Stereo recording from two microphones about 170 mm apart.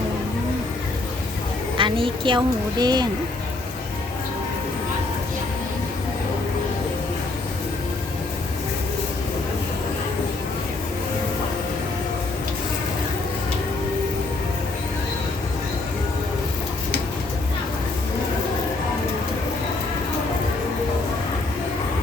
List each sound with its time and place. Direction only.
1.7 s a woman's voice: 30° right (ahead or behind)